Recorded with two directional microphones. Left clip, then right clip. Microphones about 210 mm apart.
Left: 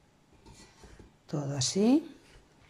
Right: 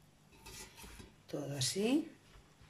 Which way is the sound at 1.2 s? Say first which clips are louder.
Left 6 dB; 5° left (ahead or behind).